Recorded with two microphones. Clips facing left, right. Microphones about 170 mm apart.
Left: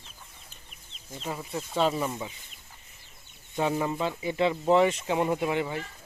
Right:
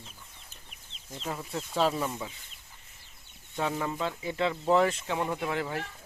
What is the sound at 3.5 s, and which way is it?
Speech, 10° left (ahead or behind).